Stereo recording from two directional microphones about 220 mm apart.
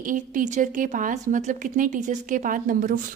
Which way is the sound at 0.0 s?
35° right (ahead or behind).